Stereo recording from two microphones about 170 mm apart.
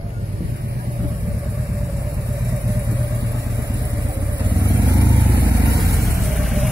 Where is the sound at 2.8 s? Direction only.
20° right (ahead or behind).